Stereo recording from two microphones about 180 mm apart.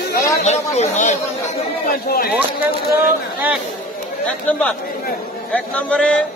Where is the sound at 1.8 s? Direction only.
55° left (ahead or behind).